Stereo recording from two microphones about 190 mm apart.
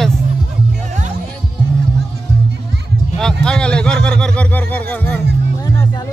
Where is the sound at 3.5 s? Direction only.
5° left (ahead or behind).